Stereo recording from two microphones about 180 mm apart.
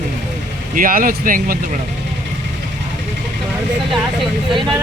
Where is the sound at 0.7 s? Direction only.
50° right (ahead or behind).